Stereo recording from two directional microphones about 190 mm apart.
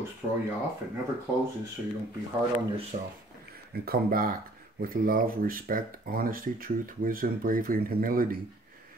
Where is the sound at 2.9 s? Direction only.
35° right (ahead or behind).